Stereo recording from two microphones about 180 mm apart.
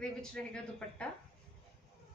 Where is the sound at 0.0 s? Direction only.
5° left (ahead or behind).